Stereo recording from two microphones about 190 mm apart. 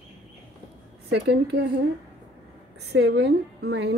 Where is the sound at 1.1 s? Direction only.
65° right (ahead or behind).